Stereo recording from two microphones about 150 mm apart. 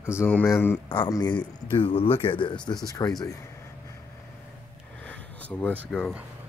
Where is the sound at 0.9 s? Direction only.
30° left (ahead or behind).